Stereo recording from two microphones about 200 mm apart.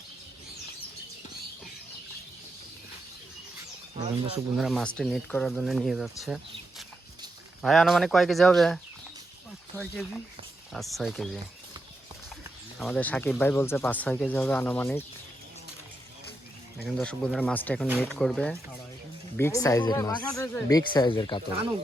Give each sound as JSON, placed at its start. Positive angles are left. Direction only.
{"t": 4.5, "sound": "speech", "side_deg": 0}
{"t": 12.8, "sound": "speech", "side_deg": 5}
{"t": 16.7, "sound": "speech", "side_deg": 0}
{"t": 17.8, "sound": "speech", "side_deg": -10}
{"t": 18.2, "sound": "speech", "side_deg": 5}
{"t": 19.4, "sound": "speech", "side_deg": 15}